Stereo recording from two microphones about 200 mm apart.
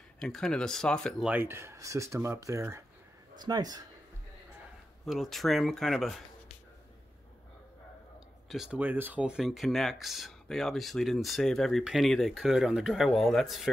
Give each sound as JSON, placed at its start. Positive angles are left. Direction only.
{"t": 0.2, "sound": "speech", "side_deg": 5}
{"t": 5.0, "sound": "speech", "side_deg": 0}
{"t": 8.5, "sound": "speech", "side_deg": -5}